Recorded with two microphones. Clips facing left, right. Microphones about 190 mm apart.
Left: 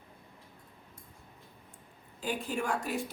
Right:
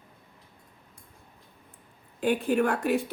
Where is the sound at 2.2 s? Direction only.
65° right (ahead or behind).